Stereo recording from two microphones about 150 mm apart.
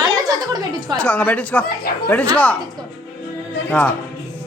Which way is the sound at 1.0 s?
10° left (ahead or behind).